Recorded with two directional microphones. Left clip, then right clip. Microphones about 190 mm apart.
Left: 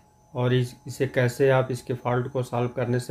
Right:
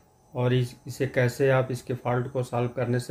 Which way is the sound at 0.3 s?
10° left (ahead or behind).